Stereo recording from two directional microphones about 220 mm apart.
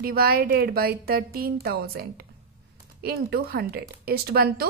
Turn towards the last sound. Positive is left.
turn(degrees=-45)  # may be behind; listen again after turning